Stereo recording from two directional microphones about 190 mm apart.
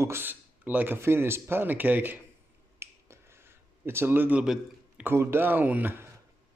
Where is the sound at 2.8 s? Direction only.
15° right (ahead or behind).